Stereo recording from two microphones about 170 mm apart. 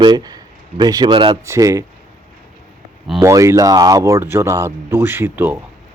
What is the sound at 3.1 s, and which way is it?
Speech, 20° right (ahead or behind).